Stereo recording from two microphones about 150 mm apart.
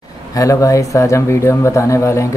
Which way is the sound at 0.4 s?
20° left (ahead or behind).